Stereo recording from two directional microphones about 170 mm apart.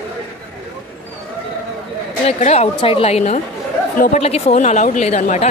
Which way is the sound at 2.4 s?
40° left (ahead or behind).